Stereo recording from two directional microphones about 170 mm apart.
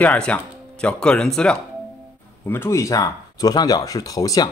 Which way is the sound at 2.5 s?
15° left (ahead or behind).